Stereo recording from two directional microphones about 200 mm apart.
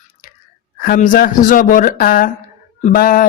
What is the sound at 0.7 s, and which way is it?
Speech, 40° left (ahead or behind).